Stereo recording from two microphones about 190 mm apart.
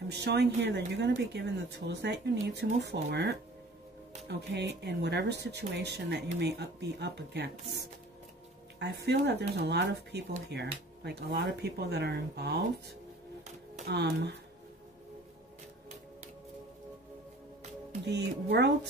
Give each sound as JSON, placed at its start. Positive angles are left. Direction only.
{"t": 0.1, "sound": "speech", "side_deg": -60}
{"t": 13.8, "sound": "speech", "side_deg": -60}
{"t": 18.0, "sound": "speech", "side_deg": -60}